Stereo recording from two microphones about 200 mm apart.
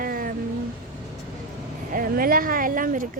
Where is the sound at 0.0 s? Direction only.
45° right (ahead or behind).